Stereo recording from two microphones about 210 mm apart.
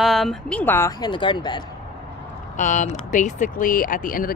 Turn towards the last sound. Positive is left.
turn(degrees=40)  # may be behind; listen again after turning